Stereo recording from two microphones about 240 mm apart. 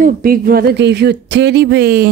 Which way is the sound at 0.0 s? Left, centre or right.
Right.